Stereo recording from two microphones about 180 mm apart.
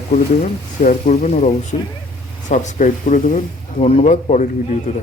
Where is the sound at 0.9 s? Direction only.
45° left (ahead or behind).